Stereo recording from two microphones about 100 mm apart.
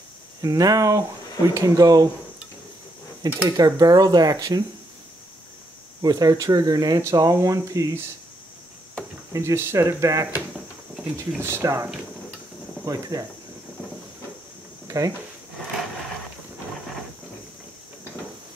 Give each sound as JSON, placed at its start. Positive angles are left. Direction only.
{"t": 0.4, "sound": "speech", "side_deg": -35}
{"t": 3.4, "sound": "speech", "side_deg": -40}
{"t": 6.0, "sound": "speech", "side_deg": -40}
{"t": 9.3, "sound": "speech", "side_deg": -30}
{"t": 11.3, "sound": "speech", "side_deg": -25}
{"t": 14.9, "sound": "speech", "side_deg": -35}